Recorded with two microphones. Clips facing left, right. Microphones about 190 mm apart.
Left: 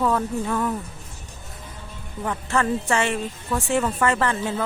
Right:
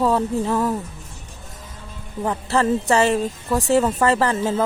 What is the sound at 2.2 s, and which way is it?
A woman's voice, 30° right (ahead or behind).